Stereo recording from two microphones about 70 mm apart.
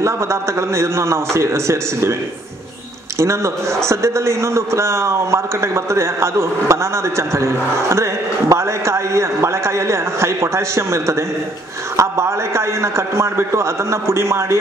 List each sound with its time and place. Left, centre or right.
0.0 s a man's voice: right
3.2 s a man's voice: right